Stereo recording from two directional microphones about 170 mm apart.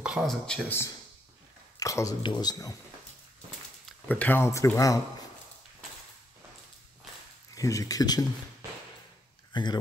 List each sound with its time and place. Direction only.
0.0 s speech: 5° right (ahead or behind)
1.8 s speech: 20° left (ahead or behind)
4.1 s speech: 10° left (ahead or behind)
7.5 s speech: 20° left (ahead or behind)
9.5 s speech: 25° left (ahead or behind)